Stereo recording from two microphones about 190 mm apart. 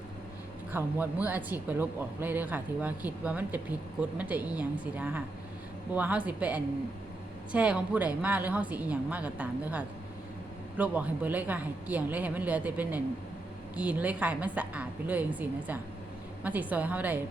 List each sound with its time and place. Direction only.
0.7 s speech: 10° right (ahead or behind)